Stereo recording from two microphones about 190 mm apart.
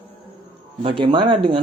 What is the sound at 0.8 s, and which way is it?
Speech, 25° right (ahead or behind).